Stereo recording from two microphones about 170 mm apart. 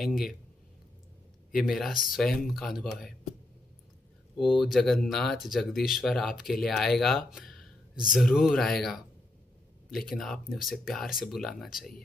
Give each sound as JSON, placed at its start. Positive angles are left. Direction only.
{"t": 0.0, "sound": "speech", "side_deg": 0}
{"t": 1.5, "sound": "speech", "side_deg": 0}
{"t": 4.4, "sound": "speech", "side_deg": 0}